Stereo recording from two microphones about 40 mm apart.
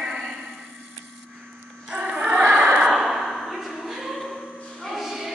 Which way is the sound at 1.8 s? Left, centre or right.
Centre.